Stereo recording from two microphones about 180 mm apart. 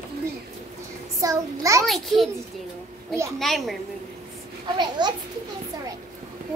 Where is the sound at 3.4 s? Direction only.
Centre (ahead or behind).